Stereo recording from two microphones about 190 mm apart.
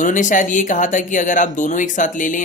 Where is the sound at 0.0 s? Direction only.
40° left (ahead or behind).